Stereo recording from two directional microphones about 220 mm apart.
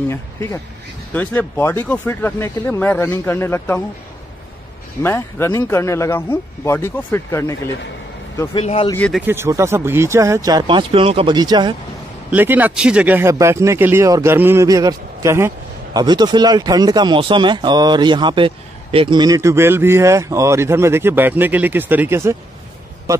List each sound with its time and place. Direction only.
0.1 s speech: 15° left (ahead or behind)
5.0 s speech: 10° left (ahead or behind)
8.5 s speech: 25° left (ahead or behind)
8.9 s speech: 5° left (ahead or behind)
9.2 s speech: 10° right (ahead or behind)
12.3 s speech: 10° right (ahead or behind)